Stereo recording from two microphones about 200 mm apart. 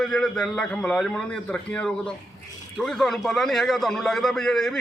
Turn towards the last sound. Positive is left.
turn(degrees=5)  # may be behind; listen again after turning